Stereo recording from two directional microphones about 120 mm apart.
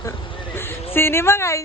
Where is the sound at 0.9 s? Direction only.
20° left (ahead or behind).